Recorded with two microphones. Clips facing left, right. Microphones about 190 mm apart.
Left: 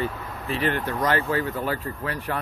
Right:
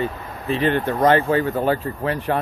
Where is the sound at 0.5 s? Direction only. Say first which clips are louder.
Right 6 dB; 25° right (ahead or behind).